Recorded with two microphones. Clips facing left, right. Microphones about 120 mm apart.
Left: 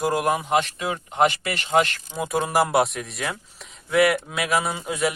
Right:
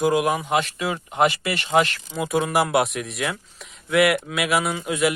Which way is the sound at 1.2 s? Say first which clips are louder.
Even; 35° left (ahead or behind).